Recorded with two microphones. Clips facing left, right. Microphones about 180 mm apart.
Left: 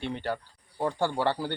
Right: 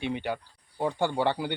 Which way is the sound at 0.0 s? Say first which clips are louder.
Right 1 dB; 10° right (ahead or behind).